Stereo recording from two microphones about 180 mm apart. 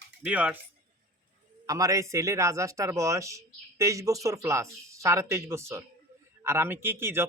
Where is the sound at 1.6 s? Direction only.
20° right (ahead or behind).